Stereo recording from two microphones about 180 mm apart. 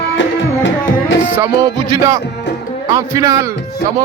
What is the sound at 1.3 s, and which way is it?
Music, 15° right (ahead or behind).